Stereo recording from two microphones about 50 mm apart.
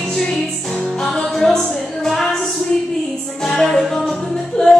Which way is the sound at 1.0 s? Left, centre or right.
Centre.